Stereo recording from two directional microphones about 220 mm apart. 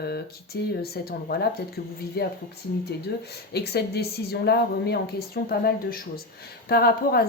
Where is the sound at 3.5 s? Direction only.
45° left (ahead or behind).